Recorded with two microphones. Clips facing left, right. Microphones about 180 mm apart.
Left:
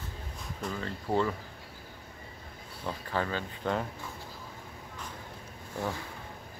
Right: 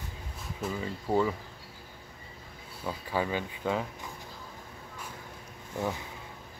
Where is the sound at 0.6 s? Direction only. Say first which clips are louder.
Right 2 dB; 5° right (ahead or behind).